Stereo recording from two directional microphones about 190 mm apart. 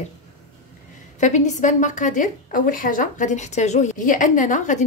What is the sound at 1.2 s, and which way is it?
A woman's voice, 40° left (ahead or behind).